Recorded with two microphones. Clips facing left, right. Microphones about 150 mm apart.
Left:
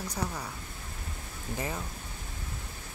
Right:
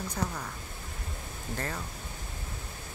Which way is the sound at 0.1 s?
10° left (ahead or behind).